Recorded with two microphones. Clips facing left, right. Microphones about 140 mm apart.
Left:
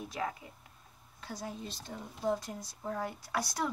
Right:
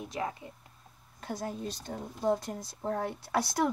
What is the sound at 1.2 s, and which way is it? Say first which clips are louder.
Speech: right 5 dB; 55° right (ahead or behind).